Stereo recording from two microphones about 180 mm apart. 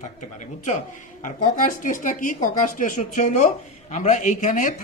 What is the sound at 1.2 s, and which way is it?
A man's voice, 50° left (ahead or behind).